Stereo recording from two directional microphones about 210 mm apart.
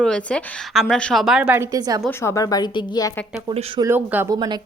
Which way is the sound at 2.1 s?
15° left (ahead or behind).